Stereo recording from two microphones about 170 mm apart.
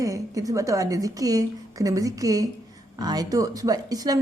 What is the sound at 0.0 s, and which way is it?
A woman's voice, 20° right (ahead or behind).